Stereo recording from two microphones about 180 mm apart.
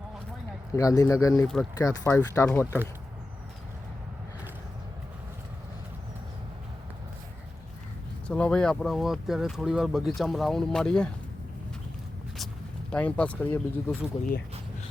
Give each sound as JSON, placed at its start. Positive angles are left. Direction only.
{"t": 0.7, "sound": "speech", "side_deg": 20}
{"t": 8.3, "sound": "speech", "side_deg": 5}
{"t": 12.9, "sound": "speech", "side_deg": 5}